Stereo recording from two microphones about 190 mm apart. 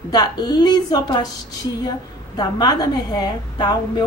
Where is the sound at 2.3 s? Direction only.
20° left (ahead or behind).